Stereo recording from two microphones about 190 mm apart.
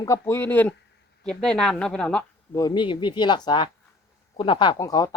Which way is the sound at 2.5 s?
20° left (ahead or behind).